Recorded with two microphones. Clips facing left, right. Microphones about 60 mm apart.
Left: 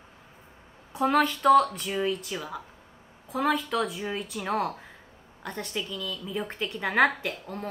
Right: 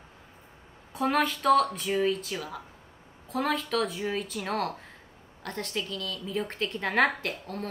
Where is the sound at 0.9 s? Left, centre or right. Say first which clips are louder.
Left 3 dB; centre.